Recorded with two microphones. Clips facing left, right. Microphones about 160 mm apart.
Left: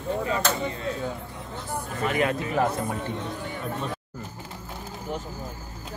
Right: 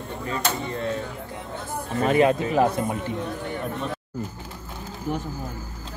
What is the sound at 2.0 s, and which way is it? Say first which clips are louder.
Speech: right 6 dB; 30° right (ahead or behind).